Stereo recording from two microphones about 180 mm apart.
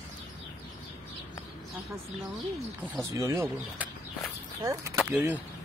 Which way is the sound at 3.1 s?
15° right (ahead or behind).